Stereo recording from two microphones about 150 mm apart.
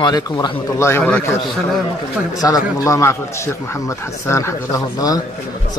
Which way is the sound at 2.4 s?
25° left (ahead or behind).